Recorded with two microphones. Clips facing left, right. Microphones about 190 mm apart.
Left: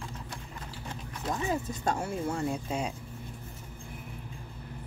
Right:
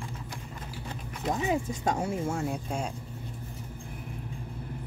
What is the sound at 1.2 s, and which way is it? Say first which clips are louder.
Speech: right 3 dB; 20° right (ahead or behind).